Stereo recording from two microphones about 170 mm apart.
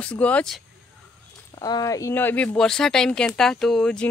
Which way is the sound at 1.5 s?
25° left (ahead or behind).